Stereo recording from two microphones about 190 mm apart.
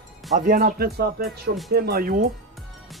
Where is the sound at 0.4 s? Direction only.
50° right (ahead or behind).